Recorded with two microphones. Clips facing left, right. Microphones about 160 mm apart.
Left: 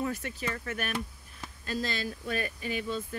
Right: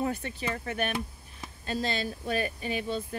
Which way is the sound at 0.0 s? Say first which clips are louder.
Right 2 dB; 30° right (ahead or behind).